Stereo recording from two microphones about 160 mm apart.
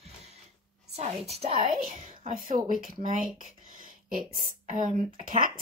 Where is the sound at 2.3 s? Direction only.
60° right (ahead or behind).